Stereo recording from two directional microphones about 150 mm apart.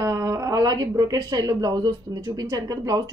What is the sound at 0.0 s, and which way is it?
Speech, 20° right (ahead or behind).